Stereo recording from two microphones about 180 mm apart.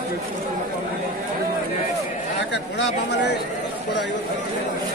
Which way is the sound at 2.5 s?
75° left (ahead or behind).